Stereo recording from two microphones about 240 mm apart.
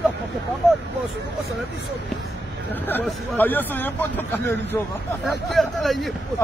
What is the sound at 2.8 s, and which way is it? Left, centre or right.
Speech, centre.